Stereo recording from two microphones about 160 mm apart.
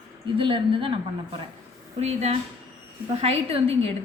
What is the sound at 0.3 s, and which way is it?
Speech, 35° right (ahead or behind).